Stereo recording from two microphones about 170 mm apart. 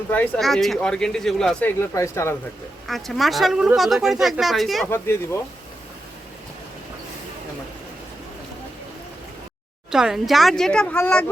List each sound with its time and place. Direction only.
0.1 s speech: 10° left (ahead or behind)
0.4 s speech: centre (ahead or behind)
1.8 s speech: 15° left (ahead or behind)
2.8 s speech: centre (ahead or behind)
4.9 s speech: 15° left (ahead or behind)
9.9 s speech: 5° right (ahead or behind)